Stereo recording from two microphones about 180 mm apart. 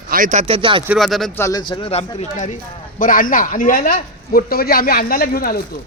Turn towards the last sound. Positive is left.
turn(degrees=55)  # may be behind; listen again after turning